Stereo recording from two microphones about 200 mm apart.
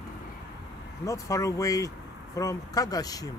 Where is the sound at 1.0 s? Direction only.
15° left (ahead or behind).